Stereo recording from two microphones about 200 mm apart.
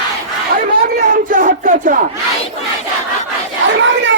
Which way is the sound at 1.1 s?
40° right (ahead or behind).